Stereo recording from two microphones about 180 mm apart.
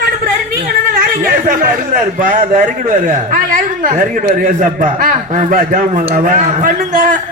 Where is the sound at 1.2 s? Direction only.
50° right (ahead or behind).